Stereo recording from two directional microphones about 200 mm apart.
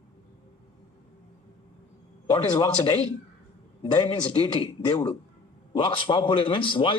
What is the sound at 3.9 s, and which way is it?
A man's voice, 25° left (ahead or behind).